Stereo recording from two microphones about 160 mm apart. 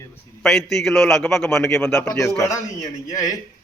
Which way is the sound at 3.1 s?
20° left (ahead or behind).